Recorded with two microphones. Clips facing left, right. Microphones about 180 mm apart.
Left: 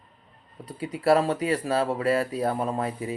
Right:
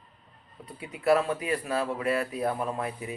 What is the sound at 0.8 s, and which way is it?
Speech, 35° left (ahead or behind).